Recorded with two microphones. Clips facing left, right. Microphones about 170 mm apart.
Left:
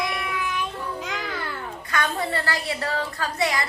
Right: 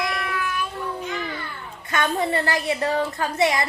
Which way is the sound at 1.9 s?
25° right (ahead or behind).